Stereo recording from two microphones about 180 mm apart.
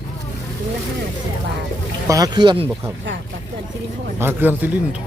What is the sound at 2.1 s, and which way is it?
Speech, 20° right (ahead or behind).